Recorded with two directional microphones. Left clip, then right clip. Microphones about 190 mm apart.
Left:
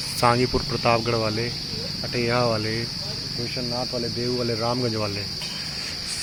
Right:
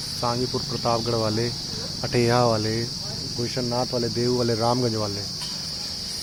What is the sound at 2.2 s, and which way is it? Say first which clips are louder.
Speech: right 2 dB; 20° right (ahead or behind).